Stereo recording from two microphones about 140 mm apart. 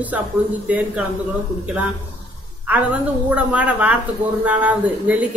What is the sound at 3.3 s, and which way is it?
A woman's voice, 10° right (ahead or behind).